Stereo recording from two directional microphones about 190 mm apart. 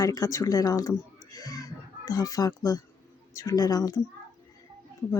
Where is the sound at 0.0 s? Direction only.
20° left (ahead or behind).